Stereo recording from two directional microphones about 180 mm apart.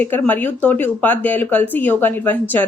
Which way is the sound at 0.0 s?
10° left (ahead or behind).